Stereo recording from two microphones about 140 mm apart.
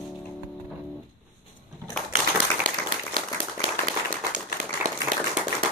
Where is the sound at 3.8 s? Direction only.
70° right (ahead or behind).